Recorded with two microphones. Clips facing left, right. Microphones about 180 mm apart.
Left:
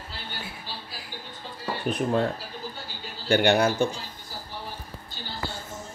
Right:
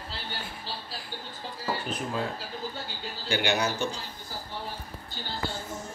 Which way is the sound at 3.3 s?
55° left (ahead or behind).